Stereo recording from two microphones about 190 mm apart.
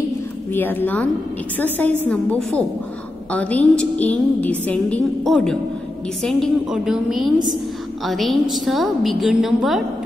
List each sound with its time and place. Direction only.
0.5 s a woman's voice: 10° left (ahead or behind)